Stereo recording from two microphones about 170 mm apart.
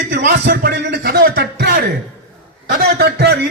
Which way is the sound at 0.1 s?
80° right.